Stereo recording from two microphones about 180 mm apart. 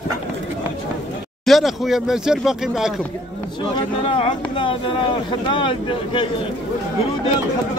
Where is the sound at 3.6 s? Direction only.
30° left (ahead or behind).